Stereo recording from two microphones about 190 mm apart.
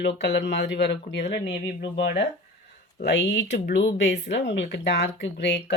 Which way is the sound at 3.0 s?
65° left (ahead or behind).